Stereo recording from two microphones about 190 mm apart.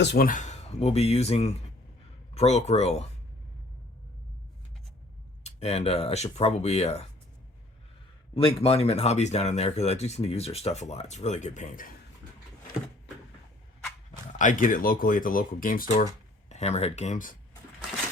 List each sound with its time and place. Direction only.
0.0 s speech: 65° left (ahead or behind)
0.3 s speech: 40° left (ahead or behind)
5.4 s speech: 35° left (ahead or behind)
8.4 s speech: 30° left (ahead or behind)
14.3 s speech: 45° left (ahead or behind)